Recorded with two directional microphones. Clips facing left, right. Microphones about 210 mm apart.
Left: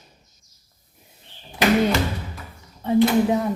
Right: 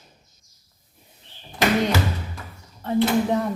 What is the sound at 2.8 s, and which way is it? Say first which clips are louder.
Speech: left 3 dB; 10° left (ahead or behind).